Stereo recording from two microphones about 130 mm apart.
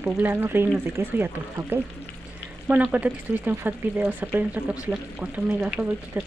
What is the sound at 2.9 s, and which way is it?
Speech, 10° right (ahead or behind).